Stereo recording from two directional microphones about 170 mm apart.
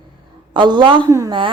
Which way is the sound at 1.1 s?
20° right (ahead or behind).